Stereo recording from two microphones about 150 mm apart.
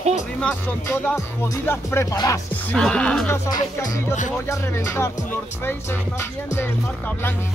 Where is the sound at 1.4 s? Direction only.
15° left (ahead or behind).